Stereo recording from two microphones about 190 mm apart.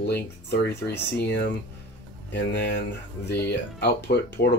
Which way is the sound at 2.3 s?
65° left (ahead or behind).